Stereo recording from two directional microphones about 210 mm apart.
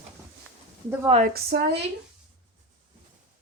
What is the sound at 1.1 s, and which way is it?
Speech, 35° right (ahead or behind).